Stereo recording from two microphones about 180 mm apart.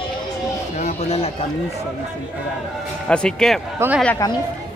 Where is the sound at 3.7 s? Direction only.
10° right (ahead or behind).